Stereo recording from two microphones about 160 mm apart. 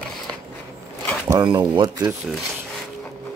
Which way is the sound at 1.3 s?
25° right (ahead or behind).